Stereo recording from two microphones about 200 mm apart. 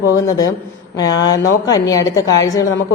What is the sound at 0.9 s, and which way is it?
A woman's voice, 20° left (ahead or behind).